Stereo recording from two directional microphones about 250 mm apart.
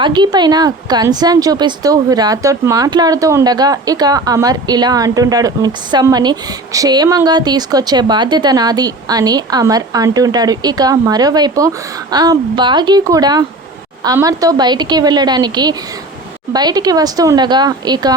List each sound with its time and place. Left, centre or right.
0.0 s speech: centre